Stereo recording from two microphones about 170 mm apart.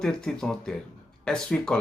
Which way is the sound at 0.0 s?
5° left (ahead or behind).